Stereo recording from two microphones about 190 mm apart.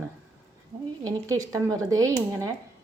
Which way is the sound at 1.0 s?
15° right (ahead or behind).